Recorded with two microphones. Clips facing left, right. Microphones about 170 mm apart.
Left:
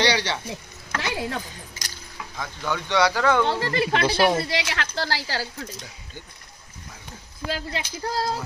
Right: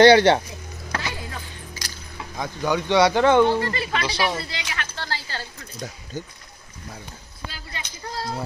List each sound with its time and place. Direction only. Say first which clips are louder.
0.0 s speech: right 11 dB; 55° right (ahead or behind)
1.0 s a sound: left 5 dB; 75° left (ahead or behind)
2.3 s speech: right 5 dB; 20° right (ahead or behind)
3.7 s speech: left 4 dB; 65° left (ahead or behind)
4.5 s speech: left 6 dB; 90° left
6.1 s speech: right 10 dB; 40° right (ahead or behind)
7.4 s speech: left 8 dB; 90° left